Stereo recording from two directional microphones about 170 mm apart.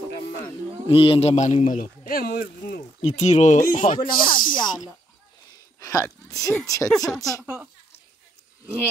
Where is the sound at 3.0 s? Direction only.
40° left (ahead or behind).